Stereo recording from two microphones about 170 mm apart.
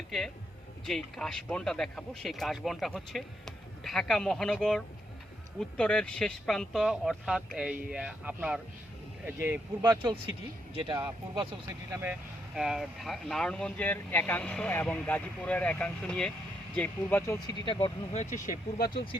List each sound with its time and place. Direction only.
0.9 s speech: 5° left (ahead or behind)
5.5 s speech: 5° left (ahead or behind); by 11.4 s 25° right (ahead or behind)
11.9 s speech: 10° right (ahead or behind); by 17.3 s 10° left (ahead or behind)
17.4 s speech: 30° left (ahead or behind)
18.4 s speech: 65° left (ahead or behind)